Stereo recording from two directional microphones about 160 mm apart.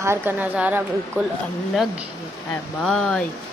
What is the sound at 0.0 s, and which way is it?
A woman's voice, 15° right (ahead or behind).